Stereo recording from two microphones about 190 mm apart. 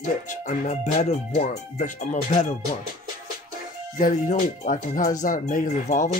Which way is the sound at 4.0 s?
45° left (ahead or behind).